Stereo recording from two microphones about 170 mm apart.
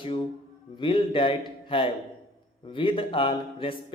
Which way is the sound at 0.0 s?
30° left (ahead or behind).